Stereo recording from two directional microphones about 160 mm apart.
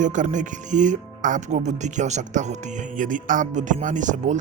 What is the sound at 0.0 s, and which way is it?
Speech, 50° right (ahead or behind).